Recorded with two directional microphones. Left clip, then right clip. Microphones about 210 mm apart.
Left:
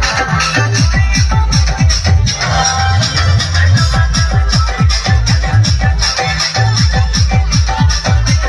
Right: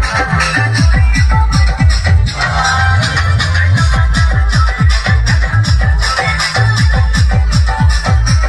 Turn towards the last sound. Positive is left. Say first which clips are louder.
# left 1 dB
turn(degrees=10)  # may be behind; listen again after turning